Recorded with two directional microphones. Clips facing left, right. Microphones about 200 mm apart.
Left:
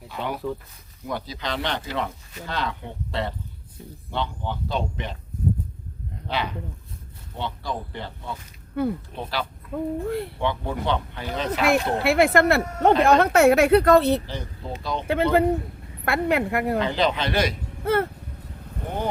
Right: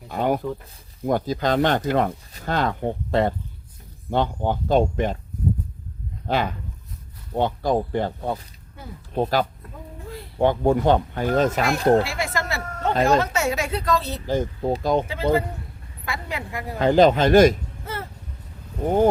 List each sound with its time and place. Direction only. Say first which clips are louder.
0.1 s speech: right 6 dB; 45° right (ahead or behind)
6.2 s speech: right 5 dB; 45° right (ahead or behind)
8.8 s speech: left 17 dB; 65° left (ahead or behind)
9.1 s speech: right 8 dB; 45° right (ahead or behind)
9.7 s speech: left 12 dB; 60° left (ahead or behind)
10.3 s speech: right 8 dB; 45° right (ahead or behind)
12.0 s speech: left 10 dB; 60° left (ahead or behind)
14.3 s speech: right 11 dB; 45° right (ahead or behind)
15.0 s speech: left 3 dB; 60° left (ahead or behind)
16.8 s speech: right 8 dB; 45° right (ahead or behind)
17.8 s speech: left 11 dB; 60° left (ahead or behind)